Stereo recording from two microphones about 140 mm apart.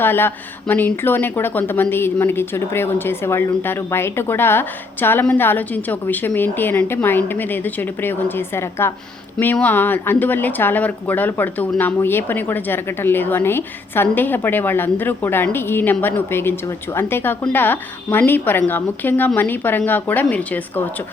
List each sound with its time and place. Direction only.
0.0 s speech: 15° left (ahead or behind)